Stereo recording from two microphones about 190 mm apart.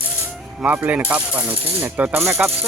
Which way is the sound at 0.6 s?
10° right (ahead or behind).